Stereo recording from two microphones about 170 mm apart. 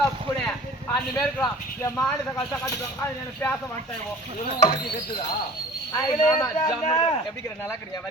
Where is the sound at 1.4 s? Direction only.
15° left (ahead or behind).